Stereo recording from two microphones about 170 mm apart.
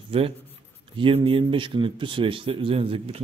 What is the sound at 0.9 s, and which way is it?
A man's voice, 30° right (ahead or behind).